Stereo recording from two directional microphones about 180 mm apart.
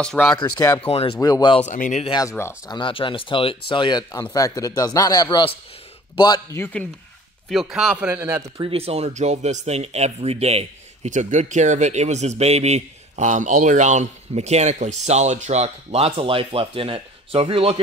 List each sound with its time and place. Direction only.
0.0 s speech: 5° left (ahead or behind)
0.4 s speech: 20° left (ahead or behind)
0.8 s speech: 35° left (ahead or behind)
1.2 s speech: 25° left (ahead or behind)
1.7 s speech: 40° left (ahead or behind)
2.0 s speech: 20° left (ahead or behind)
2.8 s speech: 30° left (ahead or behind)
6.6 s speech: 10° left (ahead or behind)
7.4 s a man's voice: centre (ahead or behind)
8.5 s speech: 30° right (ahead or behind)